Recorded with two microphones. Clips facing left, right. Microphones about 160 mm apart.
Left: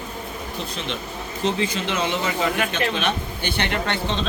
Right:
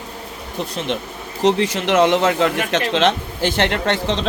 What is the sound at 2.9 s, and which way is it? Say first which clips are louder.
A man's voice: right 7 dB; 90° right.